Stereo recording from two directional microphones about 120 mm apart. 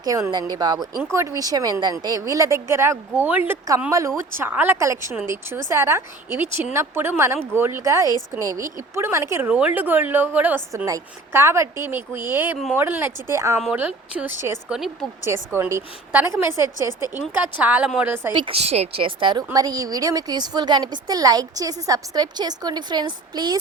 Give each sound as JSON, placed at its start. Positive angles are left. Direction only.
{"t": 0.0, "sound": "a woman's voice", "side_deg": -30}
{"t": 9.5, "sound": "a woman's voice", "side_deg": -10}
{"t": 18.3, "sound": "a woman's voice", "side_deg": -50}
{"t": 19.5, "sound": "a woman's voice", "side_deg": -30}